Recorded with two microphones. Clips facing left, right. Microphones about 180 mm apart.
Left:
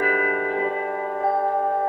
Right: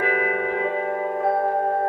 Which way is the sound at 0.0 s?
40° left (ahead or behind).